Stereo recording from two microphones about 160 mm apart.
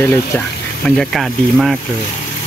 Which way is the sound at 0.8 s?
5° left (ahead or behind).